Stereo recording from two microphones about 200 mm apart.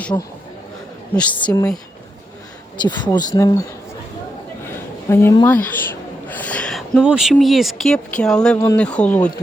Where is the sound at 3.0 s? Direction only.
20° left (ahead or behind).